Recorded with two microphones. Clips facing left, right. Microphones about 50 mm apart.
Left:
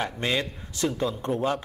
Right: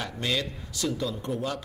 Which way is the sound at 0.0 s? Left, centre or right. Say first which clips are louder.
Left 3 dB; left.